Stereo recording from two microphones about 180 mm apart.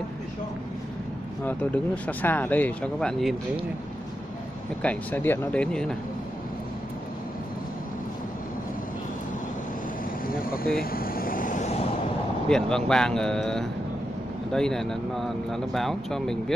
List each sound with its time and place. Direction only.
1.4 s speech: 10° left (ahead or behind)
4.8 s speech: 10° left (ahead or behind)
10.2 s vehicle: 55° left (ahead or behind); by 11.9 s 40° left (ahead or behind)
12.4 s speech: 5° left (ahead or behind)